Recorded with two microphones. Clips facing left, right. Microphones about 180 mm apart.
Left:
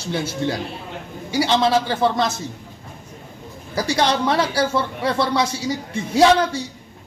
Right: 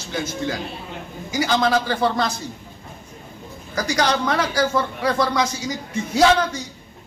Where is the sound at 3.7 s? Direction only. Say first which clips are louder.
Left 1 dB; 30° left (ahead or behind).